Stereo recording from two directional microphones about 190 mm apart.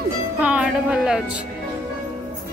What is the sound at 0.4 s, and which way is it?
A woman's voice, 5° right (ahead or behind).